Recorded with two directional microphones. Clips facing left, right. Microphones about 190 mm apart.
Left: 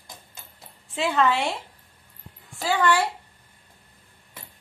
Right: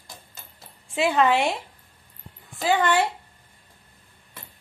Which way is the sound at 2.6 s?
20° right (ahead or behind).